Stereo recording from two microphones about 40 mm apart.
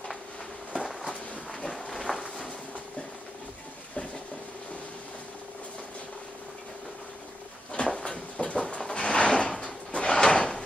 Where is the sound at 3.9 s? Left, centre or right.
Left.